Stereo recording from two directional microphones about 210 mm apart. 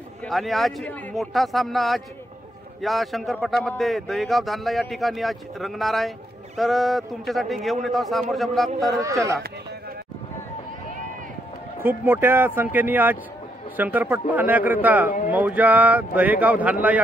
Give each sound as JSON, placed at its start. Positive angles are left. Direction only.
{"t": 0.2, "sound": "speech", "side_deg": 0}
{"t": 9.0, "sound": "speech", "side_deg": -15}
{"t": 11.8, "sound": "speech", "side_deg": -10}